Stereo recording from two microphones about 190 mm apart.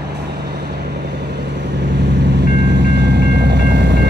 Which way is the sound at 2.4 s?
65° right (ahead or behind).